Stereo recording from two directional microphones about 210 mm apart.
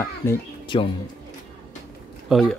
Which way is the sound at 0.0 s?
10° left (ahead or behind).